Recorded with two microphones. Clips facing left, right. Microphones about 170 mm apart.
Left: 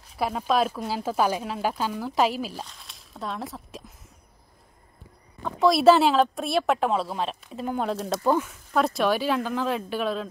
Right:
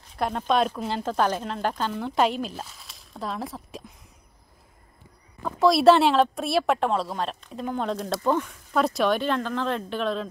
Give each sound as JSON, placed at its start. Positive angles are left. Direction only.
{"t": 0.1, "sound": "a woman's voice", "side_deg": 5}
{"t": 5.4, "sound": "a woman's voice", "side_deg": 0}